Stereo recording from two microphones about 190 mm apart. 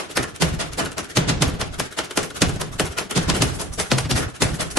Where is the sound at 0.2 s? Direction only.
Centre (ahead or behind).